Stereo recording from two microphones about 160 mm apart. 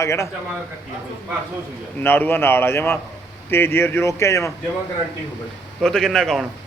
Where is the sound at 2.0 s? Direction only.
15° left (ahead or behind).